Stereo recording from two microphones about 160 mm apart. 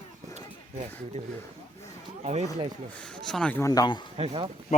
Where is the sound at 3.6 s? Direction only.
25° left (ahead or behind).